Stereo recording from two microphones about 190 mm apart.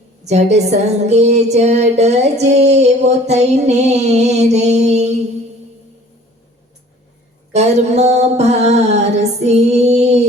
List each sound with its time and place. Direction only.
0.3 s music: 35° right (ahead or behind)
7.5 s music: 35° right (ahead or behind)